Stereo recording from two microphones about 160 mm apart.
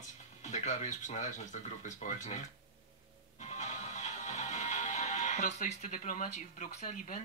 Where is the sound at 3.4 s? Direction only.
45° left (ahead or behind).